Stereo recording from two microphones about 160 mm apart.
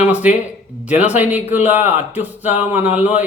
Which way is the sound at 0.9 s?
10° right (ahead or behind).